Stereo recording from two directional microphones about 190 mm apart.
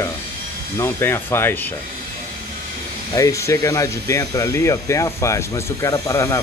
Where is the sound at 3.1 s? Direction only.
15° left (ahead or behind).